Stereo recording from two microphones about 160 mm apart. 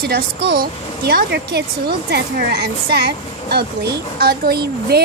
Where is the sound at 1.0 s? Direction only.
80° right.